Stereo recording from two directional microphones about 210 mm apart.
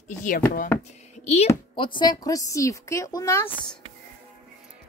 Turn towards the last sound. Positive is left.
turn(degrees=10)  # may be behind; listen again after turning